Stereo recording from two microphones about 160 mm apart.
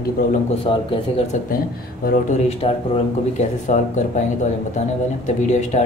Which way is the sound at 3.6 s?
50° left (ahead or behind).